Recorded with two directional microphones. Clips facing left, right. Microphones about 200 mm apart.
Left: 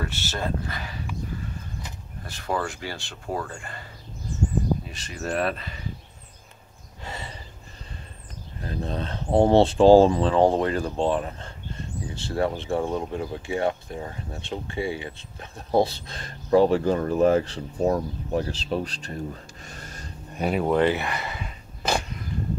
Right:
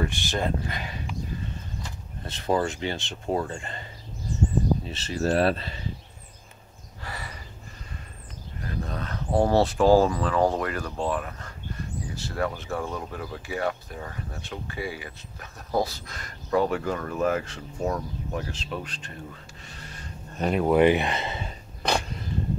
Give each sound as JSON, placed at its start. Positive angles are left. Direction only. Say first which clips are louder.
{"t": 0.0, "sound": "speech", "louder": "right 3 dB", "side_deg": -15}
{"t": 2.2, "sound": "speech", "louder": "right 3 dB", "side_deg": -20}
{"t": 4.8, "sound": "speech", "louder": "right 6 dB", "side_deg": -30}
{"t": 7.0, "sound": "snort", "louder": "left 2 dB", "side_deg": 25}
{"t": 8.5, "sound": "speech", "louder": "left 3 dB", "side_deg": 30}
{"t": 20.3, "sound": "speech", "louder": "even", "side_deg": 5}
{"t": 20.7, "sound": "speech", "louder": "right 5 dB", "side_deg": -15}